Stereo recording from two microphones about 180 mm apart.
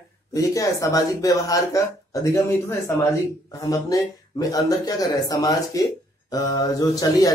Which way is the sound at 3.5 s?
20° left (ahead or behind).